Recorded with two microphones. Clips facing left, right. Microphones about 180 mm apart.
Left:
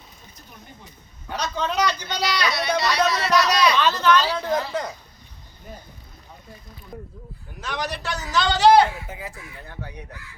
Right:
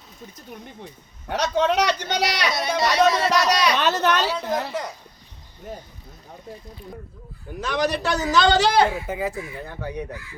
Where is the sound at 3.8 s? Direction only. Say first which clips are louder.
Left 1 dB; 65° right (ahead or behind).